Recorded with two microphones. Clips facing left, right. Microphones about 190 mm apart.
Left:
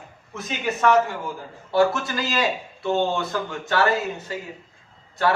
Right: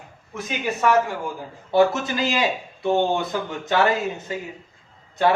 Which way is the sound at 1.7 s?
20° right (ahead or behind).